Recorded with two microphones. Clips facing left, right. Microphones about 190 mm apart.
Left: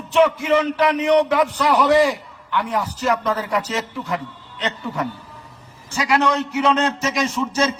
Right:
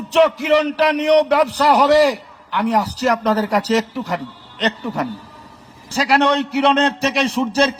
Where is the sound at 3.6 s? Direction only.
75° right (ahead or behind).